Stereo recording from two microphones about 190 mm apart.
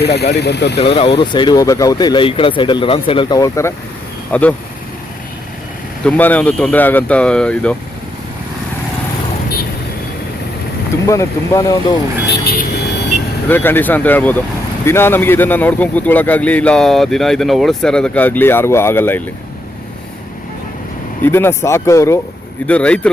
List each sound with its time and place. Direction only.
0.0 s speech: 60° left (ahead or behind)
0.8 s speech: 30° left (ahead or behind); by 4.5 s 10° left (ahead or behind)
6.1 s speech: 10° left (ahead or behind)
11.0 s speech: 15° left (ahead or behind)
12.2 s speech: 55° left (ahead or behind)
13.5 s speech: 10° left (ahead or behind)
21.2 s speech: 10° left (ahead or behind)